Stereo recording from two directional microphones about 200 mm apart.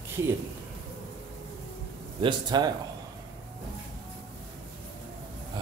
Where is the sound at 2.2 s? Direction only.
20° right (ahead or behind).